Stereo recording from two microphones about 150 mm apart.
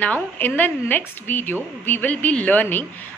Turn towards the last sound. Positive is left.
turn(degrees=10)  # may be behind; listen again after turning